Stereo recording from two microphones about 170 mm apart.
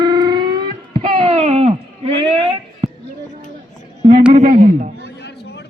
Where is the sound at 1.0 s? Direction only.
35° right (ahead or behind).